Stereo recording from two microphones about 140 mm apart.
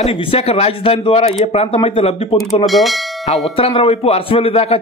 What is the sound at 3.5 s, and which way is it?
A man's voice, 45° left (ahead or behind).